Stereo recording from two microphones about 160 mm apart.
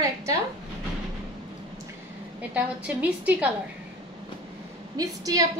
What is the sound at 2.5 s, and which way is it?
A woman's voice, 10° right (ahead or behind).